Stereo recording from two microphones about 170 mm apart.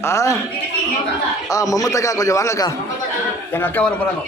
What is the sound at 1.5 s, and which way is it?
A man's voice, 20° left (ahead or behind).